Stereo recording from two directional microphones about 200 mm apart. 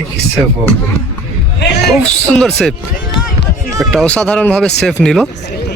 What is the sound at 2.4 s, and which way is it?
Speech, centre (ahead or behind).